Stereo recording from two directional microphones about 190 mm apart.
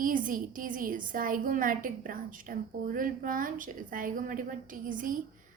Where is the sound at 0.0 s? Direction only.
45° right (ahead or behind).